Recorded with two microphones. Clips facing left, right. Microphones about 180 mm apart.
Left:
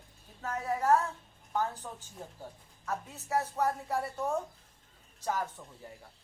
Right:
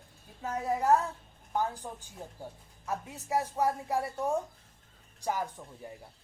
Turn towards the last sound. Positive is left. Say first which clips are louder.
# right 1 dB
turn(degrees=-15)  # may be behind; listen again after turning